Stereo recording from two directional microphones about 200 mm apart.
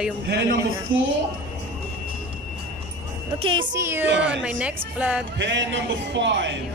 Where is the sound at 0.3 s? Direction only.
55° right (ahead or behind).